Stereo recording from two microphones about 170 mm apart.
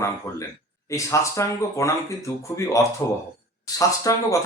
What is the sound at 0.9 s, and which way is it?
Speech, 20° left (ahead or behind).